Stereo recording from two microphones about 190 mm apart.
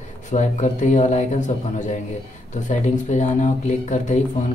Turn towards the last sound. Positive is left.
turn(degrees=40)  # may be behind; listen again after turning